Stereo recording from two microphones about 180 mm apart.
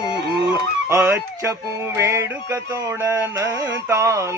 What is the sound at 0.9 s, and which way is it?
Speech, 15° right (ahead or behind).